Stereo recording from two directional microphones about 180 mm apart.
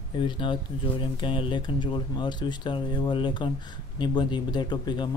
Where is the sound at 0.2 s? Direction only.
25° left (ahead or behind).